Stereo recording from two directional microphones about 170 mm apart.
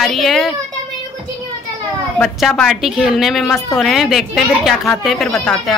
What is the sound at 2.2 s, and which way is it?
A woman's voice, centre (ahead or behind).